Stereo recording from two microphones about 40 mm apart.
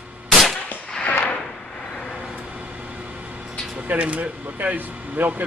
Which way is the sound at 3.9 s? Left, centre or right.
Right.